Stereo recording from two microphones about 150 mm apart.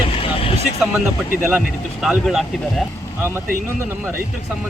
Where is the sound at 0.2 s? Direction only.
40° left (ahead or behind).